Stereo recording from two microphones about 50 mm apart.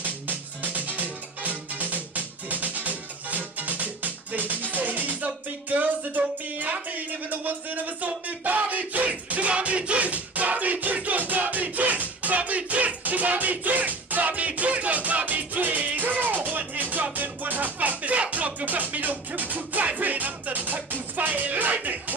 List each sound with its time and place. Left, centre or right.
0.6 s music: right
21.7 s speech: right